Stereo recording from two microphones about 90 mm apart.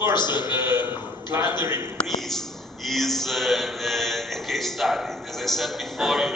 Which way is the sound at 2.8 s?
Centre (ahead or behind).